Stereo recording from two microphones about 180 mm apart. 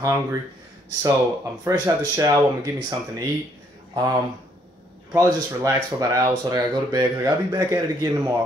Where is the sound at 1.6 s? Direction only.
20° right (ahead or behind).